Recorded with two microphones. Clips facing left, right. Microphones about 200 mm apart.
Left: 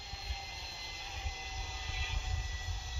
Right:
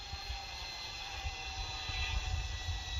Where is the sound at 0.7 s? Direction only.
20° left (ahead or behind).